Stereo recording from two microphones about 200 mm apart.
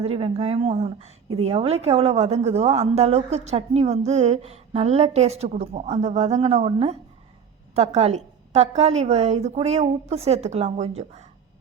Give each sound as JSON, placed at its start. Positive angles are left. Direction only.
{"t": 0.0, "sound": "a woman's voice", "side_deg": -30}